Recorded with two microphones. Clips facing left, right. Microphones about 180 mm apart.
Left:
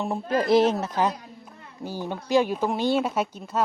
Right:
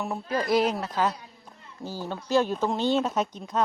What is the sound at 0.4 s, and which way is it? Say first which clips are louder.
Speech: left 4 dB; 25° left (ahead or behind).